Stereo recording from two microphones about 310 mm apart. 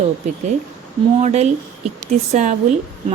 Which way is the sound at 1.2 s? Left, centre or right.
Right.